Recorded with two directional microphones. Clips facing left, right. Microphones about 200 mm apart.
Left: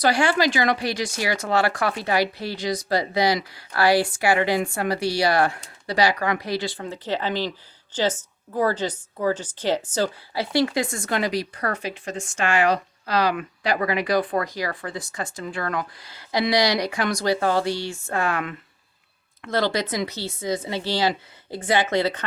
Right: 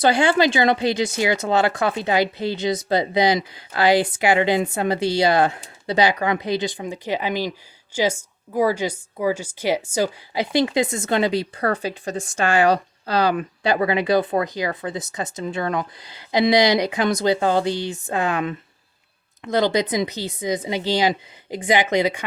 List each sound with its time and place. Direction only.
0.0 s speech: 25° right (ahead or behind)